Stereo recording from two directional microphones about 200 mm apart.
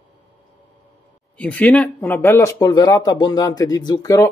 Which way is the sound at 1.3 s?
10° left (ahead or behind).